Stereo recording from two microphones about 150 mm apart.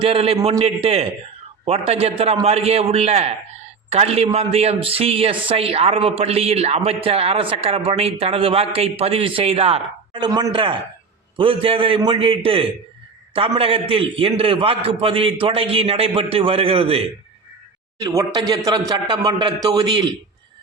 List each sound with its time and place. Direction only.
0.0 s a man's voice: 40° right (ahead or behind)
18.0 s speech: 25° right (ahead or behind)